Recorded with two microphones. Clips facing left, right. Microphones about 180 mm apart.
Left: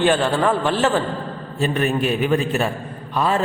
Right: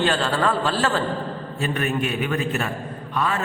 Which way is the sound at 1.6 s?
35° left (ahead or behind).